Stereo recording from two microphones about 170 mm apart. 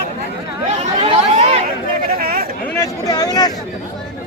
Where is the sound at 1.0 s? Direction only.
35° right (ahead or behind).